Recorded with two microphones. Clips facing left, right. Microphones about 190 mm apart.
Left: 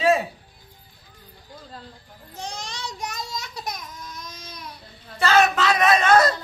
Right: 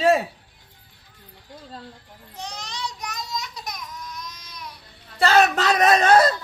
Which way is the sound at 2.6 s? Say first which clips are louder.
Even; 25° left (ahead or behind).